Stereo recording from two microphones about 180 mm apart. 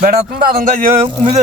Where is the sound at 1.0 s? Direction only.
30° right (ahead or behind).